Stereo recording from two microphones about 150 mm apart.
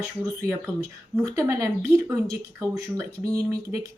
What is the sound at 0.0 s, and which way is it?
Speech, 20° right (ahead or behind).